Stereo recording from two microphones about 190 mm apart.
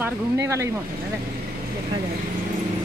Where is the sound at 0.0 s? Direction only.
15° right (ahead or behind).